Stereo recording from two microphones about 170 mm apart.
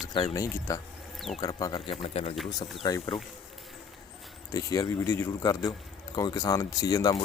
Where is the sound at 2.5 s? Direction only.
25° left (ahead or behind).